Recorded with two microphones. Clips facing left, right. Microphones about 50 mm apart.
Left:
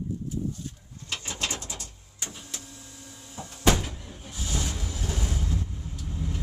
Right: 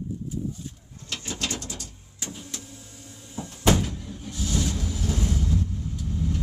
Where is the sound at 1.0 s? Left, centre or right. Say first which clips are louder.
Even; centre.